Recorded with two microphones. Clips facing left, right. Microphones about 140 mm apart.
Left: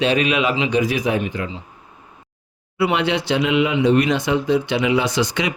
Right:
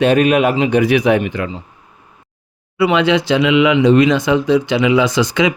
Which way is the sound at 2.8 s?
90° right.